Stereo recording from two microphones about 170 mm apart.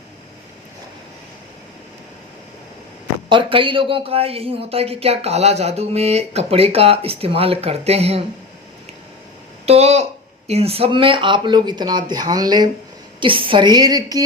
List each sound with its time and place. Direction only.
3.2 s speech: 30° right (ahead or behind)
9.6 s speech: 40° right (ahead or behind); by 14.2 s 25° right (ahead or behind)